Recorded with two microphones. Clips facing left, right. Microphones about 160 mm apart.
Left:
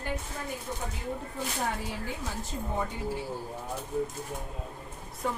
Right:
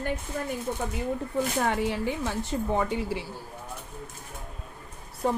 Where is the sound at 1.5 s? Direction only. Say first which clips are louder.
Right 5 dB; 70° right (ahead or behind).